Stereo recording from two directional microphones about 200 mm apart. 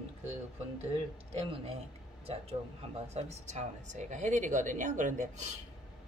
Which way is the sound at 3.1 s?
35° right (ahead or behind).